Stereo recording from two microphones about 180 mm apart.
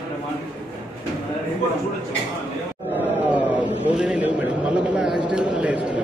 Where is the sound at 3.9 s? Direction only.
5° right (ahead or behind).